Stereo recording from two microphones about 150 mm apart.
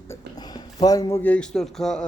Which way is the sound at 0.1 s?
25° left (ahead or behind).